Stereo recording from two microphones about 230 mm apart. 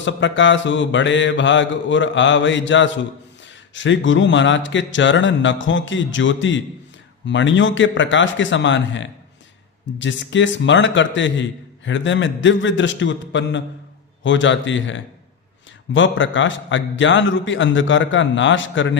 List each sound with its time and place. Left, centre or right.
0.0 s mantra: left
15.9 s a man's voice: left